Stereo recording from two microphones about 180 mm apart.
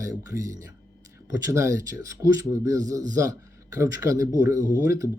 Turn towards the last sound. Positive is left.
turn(degrees=-20)  # may be behind; listen again after turning